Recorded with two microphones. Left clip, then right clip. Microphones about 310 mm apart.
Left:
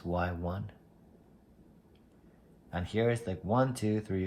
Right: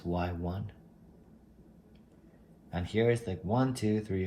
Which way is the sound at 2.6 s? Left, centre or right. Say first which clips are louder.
Right 2 dB; centre.